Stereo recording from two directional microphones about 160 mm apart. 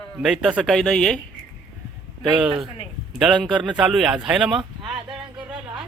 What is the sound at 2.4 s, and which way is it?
A man's voice, 5° right (ahead or behind).